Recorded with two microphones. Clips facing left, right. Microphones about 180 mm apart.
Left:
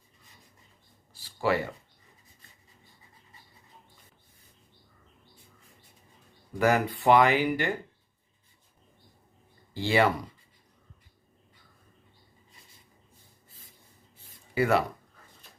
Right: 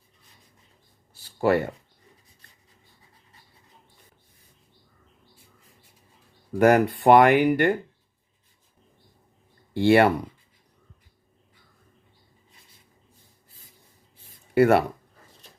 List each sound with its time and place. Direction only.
1.4 s speech: 50° right (ahead or behind)
6.6 s speech: 50° right (ahead or behind)
9.7 s speech: 60° right (ahead or behind)
14.5 s speech: 60° right (ahead or behind)